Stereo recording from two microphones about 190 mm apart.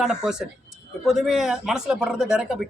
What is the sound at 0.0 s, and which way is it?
Speech, 5° right (ahead or behind).